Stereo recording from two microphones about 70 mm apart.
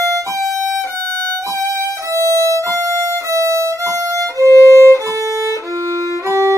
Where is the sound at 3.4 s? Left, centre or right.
Right.